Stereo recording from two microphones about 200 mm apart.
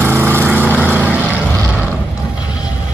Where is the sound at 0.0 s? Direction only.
10° right (ahead or behind).